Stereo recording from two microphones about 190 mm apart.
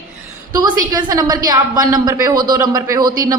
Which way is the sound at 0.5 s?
20° right (ahead or behind).